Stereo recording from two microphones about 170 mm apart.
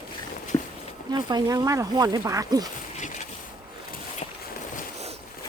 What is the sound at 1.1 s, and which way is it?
Speech, 25° right (ahead or behind).